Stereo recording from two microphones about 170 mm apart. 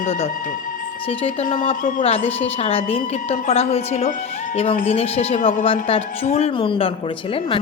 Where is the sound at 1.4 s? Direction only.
50° left (ahead or behind).